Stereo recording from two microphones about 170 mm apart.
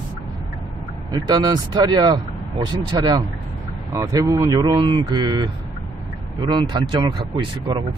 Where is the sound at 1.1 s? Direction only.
25° right (ahead or behind).